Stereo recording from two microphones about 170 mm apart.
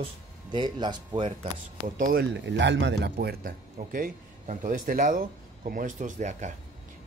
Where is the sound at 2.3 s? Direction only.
90° right.